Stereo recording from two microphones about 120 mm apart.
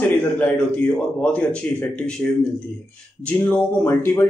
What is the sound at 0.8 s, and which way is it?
A man's voice, 10° left (ahead or behind).